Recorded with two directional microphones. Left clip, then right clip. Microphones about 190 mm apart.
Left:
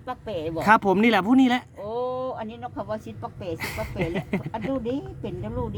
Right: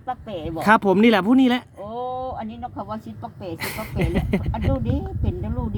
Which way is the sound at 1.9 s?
30° left (ahead or behind).